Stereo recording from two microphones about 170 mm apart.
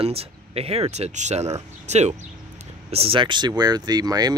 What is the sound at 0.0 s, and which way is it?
Speech, 35° right (ahead or behind).